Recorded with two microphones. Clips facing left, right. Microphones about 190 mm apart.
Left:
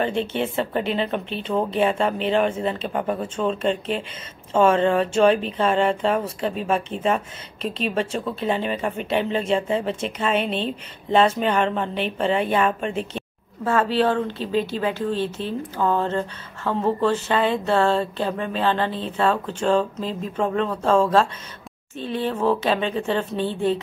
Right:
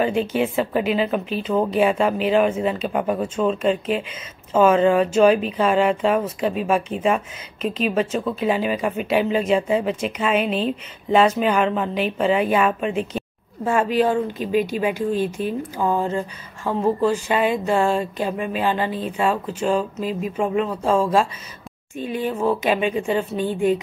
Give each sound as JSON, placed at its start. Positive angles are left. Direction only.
{"t": 0.0, "sound": "speech", "side_deg": -5}
{"t": 10.3, "sound": "a woman's voice", "side_deg": 30}
{"t": 11.1, "sound": "speech", "side_deg": -10}